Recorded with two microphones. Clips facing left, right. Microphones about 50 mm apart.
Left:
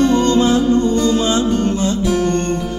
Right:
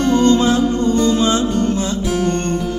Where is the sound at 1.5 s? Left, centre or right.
Left.